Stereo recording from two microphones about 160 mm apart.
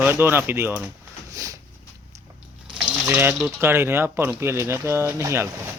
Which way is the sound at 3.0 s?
15° right (ahead or behind).